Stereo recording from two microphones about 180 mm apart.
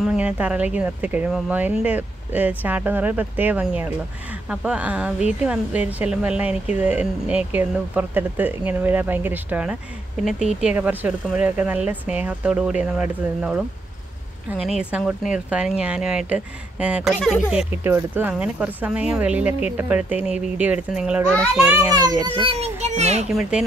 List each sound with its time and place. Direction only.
0.0 s speech: 5° right (ahead or behind)
14.8 s speech: 5° right (ahead or behind)
17.8 s a child's voice: 10° right (ahead or behind); by 23.2 s 40° right (ahead or behind)